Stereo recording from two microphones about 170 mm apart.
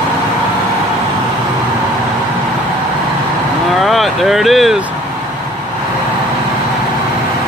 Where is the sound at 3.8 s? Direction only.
Centre (ahead or behind).